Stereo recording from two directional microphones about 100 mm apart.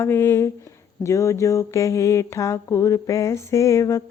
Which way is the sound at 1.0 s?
30° left (ahead or behind).